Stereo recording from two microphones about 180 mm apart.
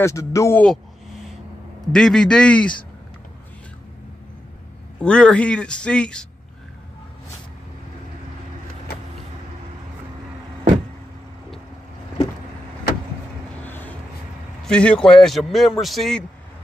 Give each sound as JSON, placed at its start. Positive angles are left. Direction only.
{"t": 0.0, "sound": "speech", "side_deg": 15}
{"t": 1.9, "sound": "a man's voice", "side_deg": 5}
{"t": 5.0, "sound": "a man's voice", "side_deg": 5}
{"t": 13.7, "sound": "vehicle", "side_deg": 10}
{"t": 14.6, "sound": "a man's voice", "side_deg": 5}